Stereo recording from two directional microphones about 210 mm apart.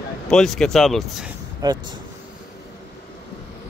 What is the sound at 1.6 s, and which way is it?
Speech, 20° right (ahead or behind).